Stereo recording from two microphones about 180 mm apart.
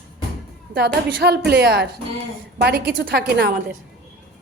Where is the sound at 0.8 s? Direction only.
65° right (ahead or behind).